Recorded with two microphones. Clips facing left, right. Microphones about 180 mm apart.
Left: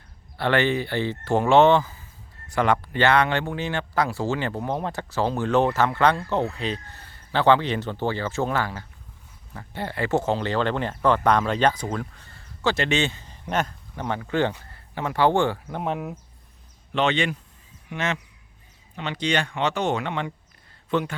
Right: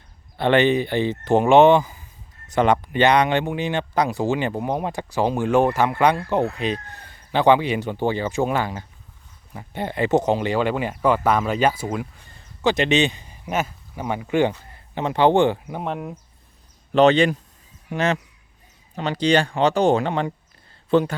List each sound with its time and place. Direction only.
0.3 s speech: 20° right (ahead or behind)
15.7 s speech: centre (ahead or behind)
16.9 s speech: 40° right (ahead or behind)